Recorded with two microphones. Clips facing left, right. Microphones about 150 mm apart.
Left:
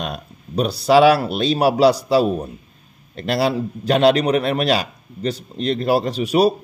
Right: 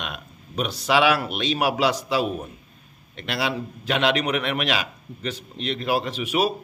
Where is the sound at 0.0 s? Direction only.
35° left (ahead or behind).